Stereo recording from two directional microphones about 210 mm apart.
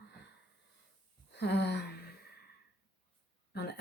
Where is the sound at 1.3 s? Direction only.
55° left (ahead or behind).